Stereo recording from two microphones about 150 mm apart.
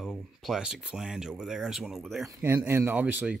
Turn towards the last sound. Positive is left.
turn(degrees=-10)  # may be behind; listen again after turning